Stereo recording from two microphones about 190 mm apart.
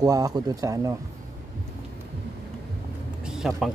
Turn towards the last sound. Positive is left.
turn(degrees=0)  # may be behind; listen again after turning